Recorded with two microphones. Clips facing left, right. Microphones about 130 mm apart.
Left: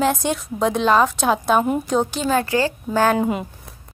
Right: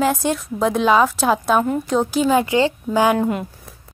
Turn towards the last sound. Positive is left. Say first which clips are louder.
# right 1 dB
turn(degrees=5)  # may be behind; listen again after turning